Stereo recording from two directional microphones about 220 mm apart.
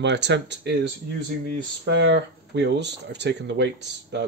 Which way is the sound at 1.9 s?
50° right (ahead or behind).